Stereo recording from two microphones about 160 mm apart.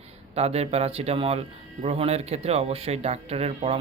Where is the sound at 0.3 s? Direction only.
40° right (ahead or behind).